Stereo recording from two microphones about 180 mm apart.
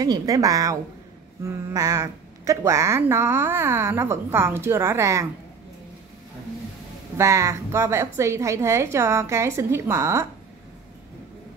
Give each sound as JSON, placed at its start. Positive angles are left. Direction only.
{"t": 0.0, "sound": "a woman's voice", "side_deg": -20}
{"t": 7.2, "sound": "a woman's voice", "side_deg": -15}